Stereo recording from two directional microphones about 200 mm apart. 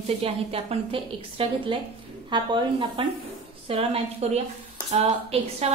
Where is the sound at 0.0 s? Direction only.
30° right (ahead or behind).